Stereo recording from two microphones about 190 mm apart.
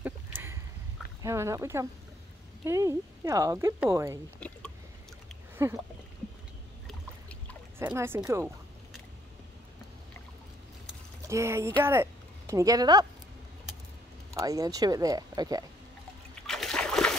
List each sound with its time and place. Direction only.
0.0 s a sound: 10° right (ahead or behind)
1.2 s speech: 15° right (ahead or behind)
4.4 s a sound: 5° left (ahead or behind)
5.6 s speech: 15° right (ahead or behind)
6.9 s boat: 5° left (ahead or behind)
7.8 s speech: 10° right (ahead or behind)
11.2 s speech: 15° right (ahead or behind)
14.3 s speech: 15° right (ahead or behind)
16.4 s splash: centre (ahead or behind)